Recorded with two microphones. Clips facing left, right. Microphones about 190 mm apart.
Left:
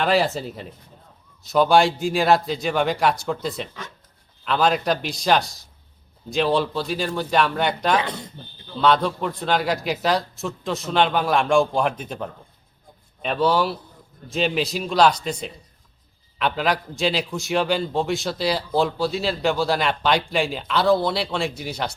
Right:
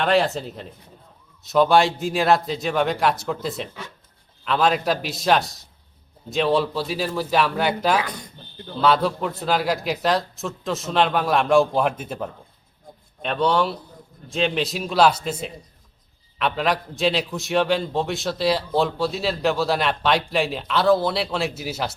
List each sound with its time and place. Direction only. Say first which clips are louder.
0.0 s a man's voice: even; centre (ahead or behind)
7.9 s speech: left 1 dB; 25° left (ahead or behind)
8.8 s a man's voice: even; 5° right (ahead or behind)